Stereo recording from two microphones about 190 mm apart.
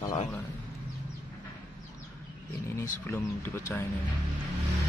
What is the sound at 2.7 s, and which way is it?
Speech, 15° left (ahead or behind).